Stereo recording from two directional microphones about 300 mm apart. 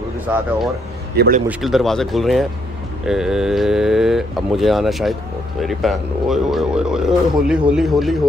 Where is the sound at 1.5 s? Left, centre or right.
Centre.